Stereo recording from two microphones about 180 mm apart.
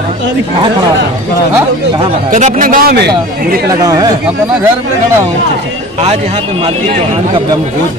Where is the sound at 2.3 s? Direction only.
45° right (ahead or behind); by 3.1 s 60° right (ahead or behind).